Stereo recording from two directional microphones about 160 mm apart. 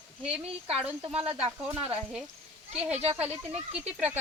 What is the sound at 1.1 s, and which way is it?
Speech, 35° right (ahead or behind).